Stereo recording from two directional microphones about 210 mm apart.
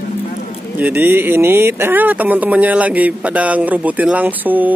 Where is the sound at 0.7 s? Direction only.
10° right (ahead or behind).